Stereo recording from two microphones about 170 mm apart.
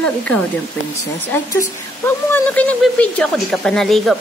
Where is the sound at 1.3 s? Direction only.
10° left (ahead or behind).